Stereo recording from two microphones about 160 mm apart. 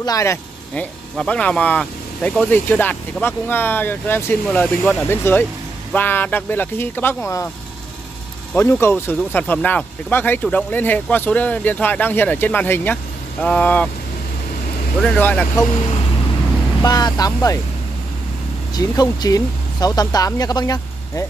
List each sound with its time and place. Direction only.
0.0 s speech: 20° left (ahead or behind)
0.7 s speech: 5° left (ahead or behind)
8.5 s speech: 15° left (ahead or behind)
15.0 s speech: 10° left (ahead or behind)
16.8 s speech: 25° left (ahead or behind)
18.8 s speech: 25° left (ahead or behind)